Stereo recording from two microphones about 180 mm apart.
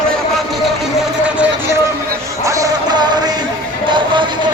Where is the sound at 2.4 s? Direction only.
20° right (ahead or behind).